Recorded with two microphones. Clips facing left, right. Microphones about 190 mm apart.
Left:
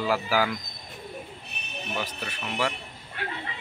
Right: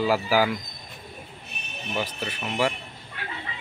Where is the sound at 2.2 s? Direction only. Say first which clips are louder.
Right 5 dB; 20° right (ahead or behind).